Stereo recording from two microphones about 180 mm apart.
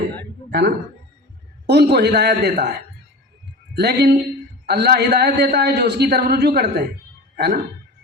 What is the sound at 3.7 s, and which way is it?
A man's voice, 65° right (ahead or behind).